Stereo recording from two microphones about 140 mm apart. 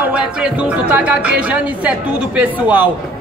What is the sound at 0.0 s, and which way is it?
A man's voice, 10° right (ahead or behind).